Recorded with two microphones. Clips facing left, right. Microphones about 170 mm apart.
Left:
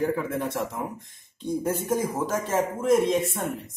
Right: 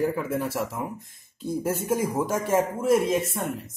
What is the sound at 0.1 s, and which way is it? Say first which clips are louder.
A man's voice: even; 5° right (ahead or behind).